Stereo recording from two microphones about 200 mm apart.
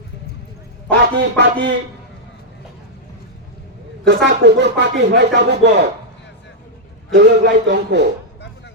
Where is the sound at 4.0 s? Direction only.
60° right (ahead or behind).